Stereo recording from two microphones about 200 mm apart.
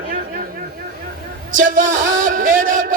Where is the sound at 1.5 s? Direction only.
40° right (ahead or behind).